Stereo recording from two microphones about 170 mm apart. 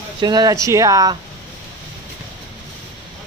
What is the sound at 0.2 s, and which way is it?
Speech, 25° right (ahead or behind).